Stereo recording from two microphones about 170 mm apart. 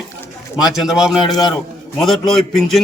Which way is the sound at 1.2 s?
25° left (ahead or behind).